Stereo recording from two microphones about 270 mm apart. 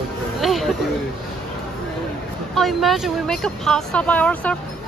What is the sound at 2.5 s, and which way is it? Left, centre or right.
Speech, centre.